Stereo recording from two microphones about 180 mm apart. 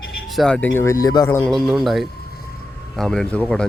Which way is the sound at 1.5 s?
Centre (ahead or behind).